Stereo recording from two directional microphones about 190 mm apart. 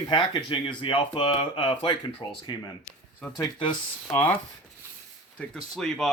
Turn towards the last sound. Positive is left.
turn(degrees=5)  # may be behind; listen again after turning